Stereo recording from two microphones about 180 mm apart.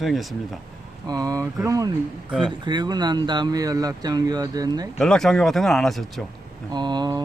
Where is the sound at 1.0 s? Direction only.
20° right (ahead or behind).